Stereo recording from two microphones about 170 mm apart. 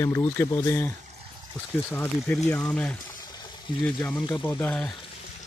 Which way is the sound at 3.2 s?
25° left (ahead or behind).